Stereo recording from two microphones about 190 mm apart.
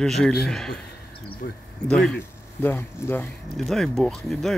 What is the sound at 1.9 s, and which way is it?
Speech, 5° left (ahead or behind).